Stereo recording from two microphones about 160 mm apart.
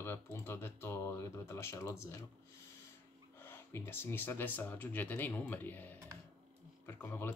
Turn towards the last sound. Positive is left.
turn(degrees=15)  # may be behind; listen again after turning